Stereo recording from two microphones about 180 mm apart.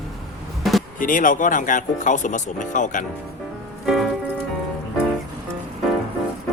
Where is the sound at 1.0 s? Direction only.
50° left (ahead or behind).